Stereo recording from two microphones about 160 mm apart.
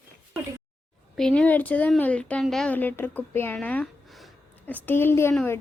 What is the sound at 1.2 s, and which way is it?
Speech, 5° left (ahead or behind).